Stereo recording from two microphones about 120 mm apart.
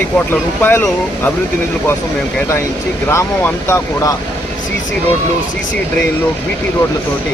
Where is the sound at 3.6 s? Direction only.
25° left (ahead or behind).